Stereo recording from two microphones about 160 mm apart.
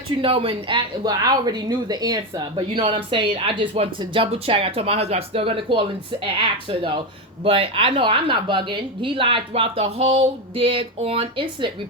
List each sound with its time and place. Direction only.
0.2 s speech: 35° right (ahead or behind)